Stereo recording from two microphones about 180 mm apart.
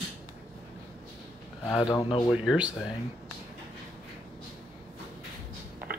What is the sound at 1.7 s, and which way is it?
Speech, 25° left (ahead or behind).